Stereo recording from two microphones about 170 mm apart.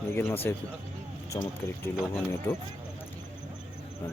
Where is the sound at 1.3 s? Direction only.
25° left (ahead or behind).